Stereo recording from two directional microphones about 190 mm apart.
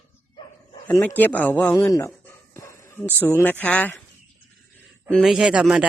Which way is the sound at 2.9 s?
10° left (ahead or behind).